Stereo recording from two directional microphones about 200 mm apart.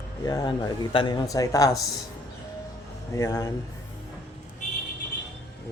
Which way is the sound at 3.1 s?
15° left (ahead or behind).